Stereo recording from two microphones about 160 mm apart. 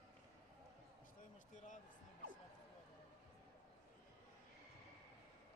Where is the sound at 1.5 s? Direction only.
50° left (ahead or behind).